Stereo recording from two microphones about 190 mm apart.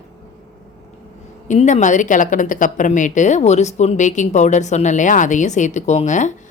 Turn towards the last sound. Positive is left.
turn(degrees=40)  # may be behind; listen again after turning